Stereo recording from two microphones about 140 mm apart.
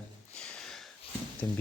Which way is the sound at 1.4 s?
15° left (ahead or behind).